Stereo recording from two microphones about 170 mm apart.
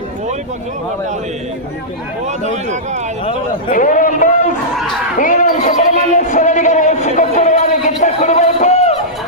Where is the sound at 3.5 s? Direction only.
50° left (ahead or behind).